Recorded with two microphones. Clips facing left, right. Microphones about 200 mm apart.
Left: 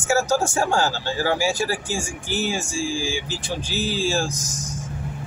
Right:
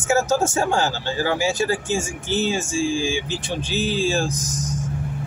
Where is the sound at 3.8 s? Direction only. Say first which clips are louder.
Right 2 dB; 20° right (ahead or behind).